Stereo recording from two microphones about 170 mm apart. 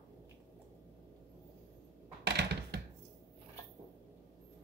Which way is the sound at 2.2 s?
85° right.